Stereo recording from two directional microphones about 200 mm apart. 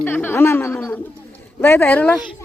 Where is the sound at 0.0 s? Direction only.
10° left (ahead or behind).